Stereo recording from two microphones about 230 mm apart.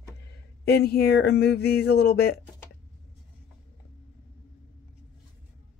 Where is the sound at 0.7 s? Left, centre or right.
Left.